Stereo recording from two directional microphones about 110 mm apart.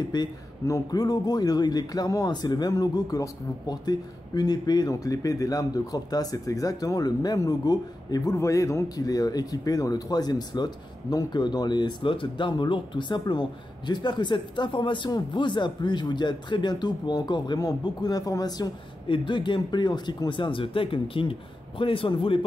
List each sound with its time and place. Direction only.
0.1 s speech: 40° left (ahead or behind)
19.0 s speech: 50° left (ahead or behind)